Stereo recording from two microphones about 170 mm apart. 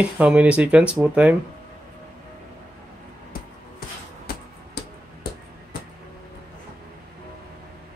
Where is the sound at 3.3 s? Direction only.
60° left (ahead or behind).